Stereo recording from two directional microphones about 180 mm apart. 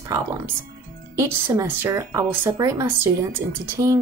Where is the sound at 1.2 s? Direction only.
10° right (ahead or behind).